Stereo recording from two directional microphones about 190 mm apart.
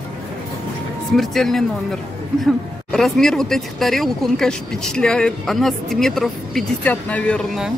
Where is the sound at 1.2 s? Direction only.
Centre (ahead or behind).